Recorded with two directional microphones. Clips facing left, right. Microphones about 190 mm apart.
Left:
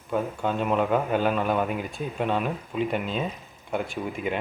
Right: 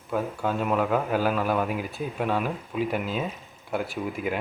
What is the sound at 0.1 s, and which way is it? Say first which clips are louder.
A man's voice: left 1 dB; centre (ahead or behind).